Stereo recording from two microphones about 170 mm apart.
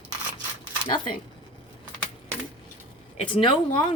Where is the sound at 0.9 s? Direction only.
30° left (ahead or behind).